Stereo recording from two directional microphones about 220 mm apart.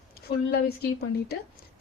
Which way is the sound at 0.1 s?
45° left (ahead or behind).